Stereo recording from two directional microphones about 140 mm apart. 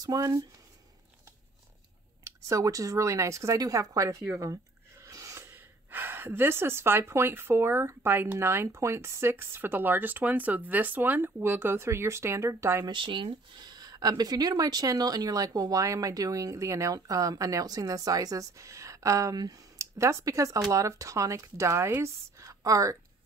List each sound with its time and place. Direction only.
0.0 s speech: 25° right (ahead or behind)
2.2 s speech: 20° right (ahead or behind)
12.8 s speech: 35° right (ahead or behind)